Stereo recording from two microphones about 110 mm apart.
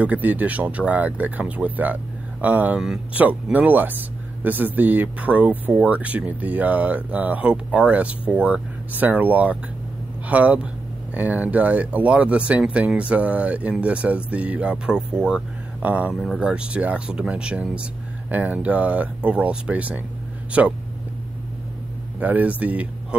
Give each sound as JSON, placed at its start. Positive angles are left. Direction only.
{"t": 0.0, "sound": "speech", "side_deg": -15}
{"t": 22.2, "sound": "speech", "side_deg": -15}